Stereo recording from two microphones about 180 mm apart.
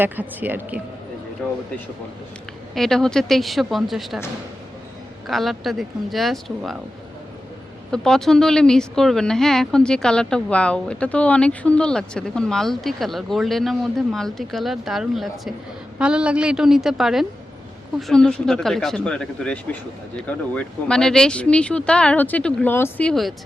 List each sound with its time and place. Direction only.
0.0 s speech: 10° right (ahead or behind)
2.7 s speech: centre (ahead or behind)
5.3 s speech: centre (ahead or behind)
7.9 s speech: 5° left (ahead or behind)